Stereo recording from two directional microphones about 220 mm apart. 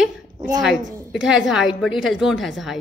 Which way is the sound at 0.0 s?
Centre (ahead or behind).